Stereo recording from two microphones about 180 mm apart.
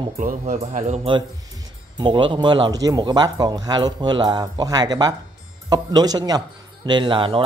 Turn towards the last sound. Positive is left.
turn(degrees=-30)  # may be behind; listen again after turning